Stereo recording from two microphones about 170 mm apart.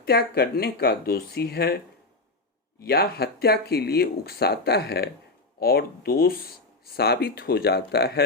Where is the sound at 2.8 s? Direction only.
65° left (ahead or behind).